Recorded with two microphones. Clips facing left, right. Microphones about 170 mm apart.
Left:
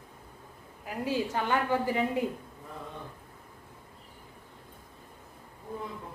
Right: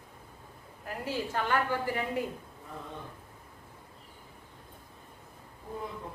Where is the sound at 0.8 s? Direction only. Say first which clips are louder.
Left 4 dB; 15° left (ahead or behind).